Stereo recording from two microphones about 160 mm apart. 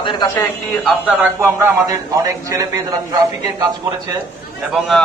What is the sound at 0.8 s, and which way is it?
Speech, 5° right (ahead or behind).